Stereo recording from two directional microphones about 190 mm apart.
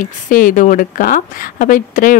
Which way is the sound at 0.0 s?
45° left (ahead or behind).